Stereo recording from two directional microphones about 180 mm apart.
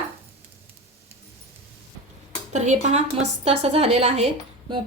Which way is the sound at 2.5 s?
40° right (ahead or behind).